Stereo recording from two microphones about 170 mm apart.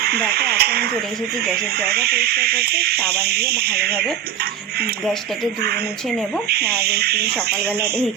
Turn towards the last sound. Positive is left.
turn(degrees=-70)  # may be behind; listen again after turning